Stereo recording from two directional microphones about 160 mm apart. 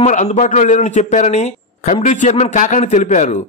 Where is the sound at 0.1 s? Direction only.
45° left (ahead or behind).